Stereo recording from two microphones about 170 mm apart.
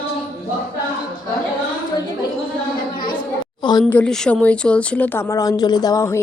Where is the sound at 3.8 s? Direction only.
5° left (ahead or behind).